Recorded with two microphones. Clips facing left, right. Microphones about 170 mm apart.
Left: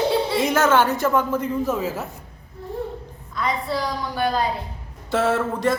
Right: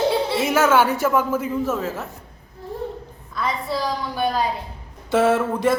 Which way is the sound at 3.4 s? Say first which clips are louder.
Even; centre (ahead or behind).